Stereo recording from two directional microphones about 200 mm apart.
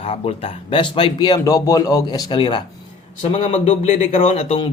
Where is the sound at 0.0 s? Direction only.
30° left (ahead or behind).